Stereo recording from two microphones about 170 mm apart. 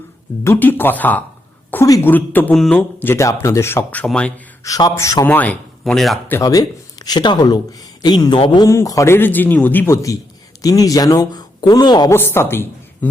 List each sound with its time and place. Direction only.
0.4 s speech: 10° left (ahead or behind)
4.6 s speech: 20° left (ahead or behind); by 6.3 s 5° left (ahead or behind)
6.3 s speech: 20° left (ahead or behind)
12.1 s speech: 15° left (ahead or behind)